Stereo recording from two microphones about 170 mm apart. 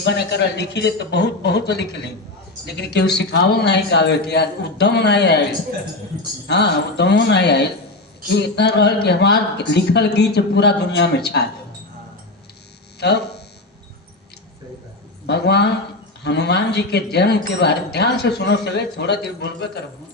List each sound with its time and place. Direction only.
0.0 s a man's voice: 85° left
6.5 s a man's voice: 80° left
13.0 s a sound: 75° left (ahead or behind)
15.3 s a man's voice: 75° left (ahead or behind)